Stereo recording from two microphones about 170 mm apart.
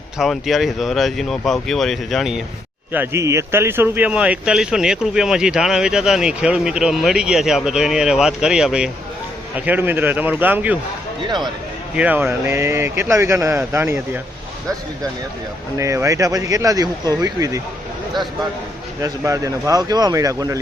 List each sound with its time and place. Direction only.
0.2 s a man's voice: centre (ahead or behind)
2.9 s a man's voice: 15° right (ahead or behind)
11.9 s speech: 10° right (ahead or behind)
15.8 s speech: 20° right (ahead or behind)
19.0 s speech: 20° right (ahead or behind)